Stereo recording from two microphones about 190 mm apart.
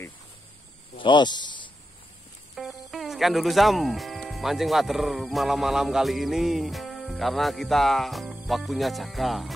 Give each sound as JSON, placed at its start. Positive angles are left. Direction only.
{"t": 0.9, "sound": "speech", "side_deg": 25}
{"t": 2.5, "sound": "speech", "side_deg": 0}